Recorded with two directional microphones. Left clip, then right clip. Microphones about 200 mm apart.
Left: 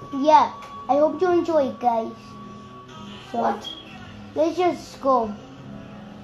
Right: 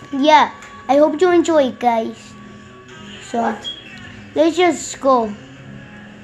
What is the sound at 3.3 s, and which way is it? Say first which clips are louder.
Speech: right 4 dB; 45° right (ahead or behind).